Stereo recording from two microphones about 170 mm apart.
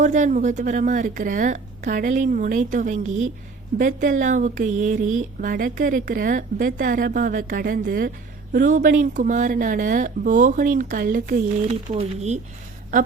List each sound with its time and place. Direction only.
0.0 s speech: 45° right (ahead or behind)
11.9 s speech: 40° right (ahead or behind)
12.9 s speech: 50° right (ahead or behind)